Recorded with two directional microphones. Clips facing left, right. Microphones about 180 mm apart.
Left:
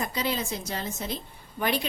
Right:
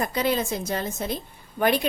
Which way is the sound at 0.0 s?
55° right (ahead or behind).